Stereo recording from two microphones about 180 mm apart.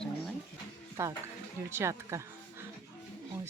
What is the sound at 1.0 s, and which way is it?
Speech, 15° right (ahead or behind).